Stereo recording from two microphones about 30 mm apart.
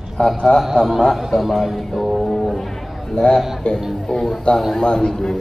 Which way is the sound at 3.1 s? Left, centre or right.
Left.